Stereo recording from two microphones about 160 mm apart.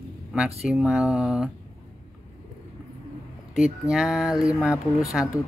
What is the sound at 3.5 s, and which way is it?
Speech, 5° right (ahead or behind).